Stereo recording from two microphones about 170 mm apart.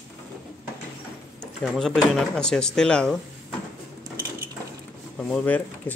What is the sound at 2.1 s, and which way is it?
Speech, 5° left (ahead or behind).